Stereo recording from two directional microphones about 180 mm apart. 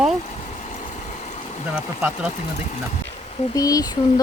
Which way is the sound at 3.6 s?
20° left (ahead or behind).